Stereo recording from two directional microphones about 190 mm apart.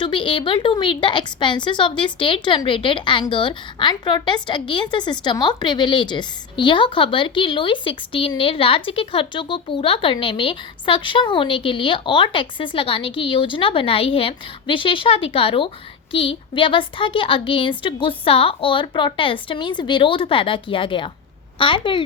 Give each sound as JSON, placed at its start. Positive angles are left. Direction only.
{"t": 0.0, "sound": "a woman's voice", "side_deg": 25}